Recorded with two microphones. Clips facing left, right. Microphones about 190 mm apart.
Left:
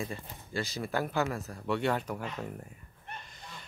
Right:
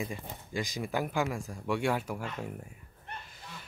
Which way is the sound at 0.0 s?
15° right (ahead or behind).